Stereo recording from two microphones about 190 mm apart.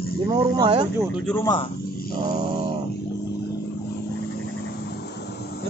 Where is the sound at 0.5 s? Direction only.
25° right (ahead or behind).